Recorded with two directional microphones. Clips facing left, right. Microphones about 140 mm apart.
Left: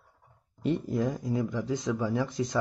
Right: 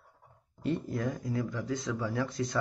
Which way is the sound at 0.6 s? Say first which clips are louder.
Left 4 dB; 20° left (ahead or behind).